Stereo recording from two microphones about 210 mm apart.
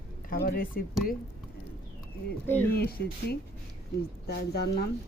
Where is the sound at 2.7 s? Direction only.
45° left (ahead or behind).